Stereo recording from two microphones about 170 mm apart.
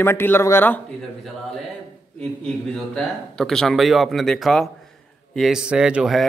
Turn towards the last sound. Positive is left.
turn(degrees=-5)  # may be behind; listen again after turning